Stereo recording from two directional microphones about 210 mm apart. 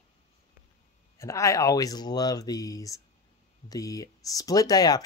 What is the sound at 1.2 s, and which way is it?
Speech, 15° left (ahead or behind).